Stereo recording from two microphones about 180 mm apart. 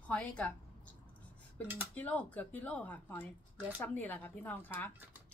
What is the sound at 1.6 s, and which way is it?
Speech, 10° left (ahead or behind).